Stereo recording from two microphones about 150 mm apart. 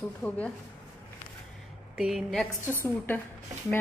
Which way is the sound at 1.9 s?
Centre (ahead or behind).